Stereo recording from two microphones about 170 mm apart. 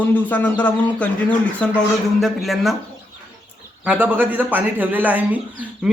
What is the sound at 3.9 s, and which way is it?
Speech, 10° right (ahead or behind).